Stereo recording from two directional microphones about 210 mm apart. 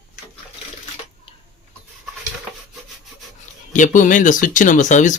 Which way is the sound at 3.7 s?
35° left (ahead or behind).